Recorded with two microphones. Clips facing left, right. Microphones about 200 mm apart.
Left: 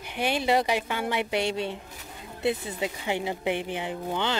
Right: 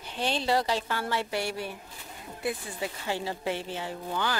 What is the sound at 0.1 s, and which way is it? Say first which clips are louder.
A woman's voice: left 3 dB; 15° left (ahead or behind).